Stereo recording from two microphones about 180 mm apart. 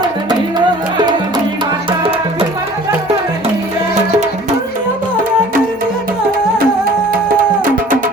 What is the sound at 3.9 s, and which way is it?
Music, 40° right (ahead or behind).